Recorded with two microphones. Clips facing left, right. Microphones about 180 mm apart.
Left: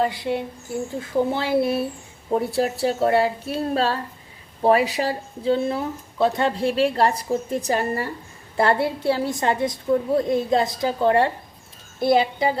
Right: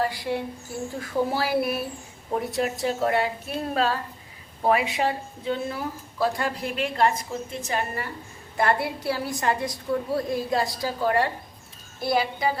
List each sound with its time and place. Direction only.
0.0 s a woman's voice: 20° left (ahead or behind)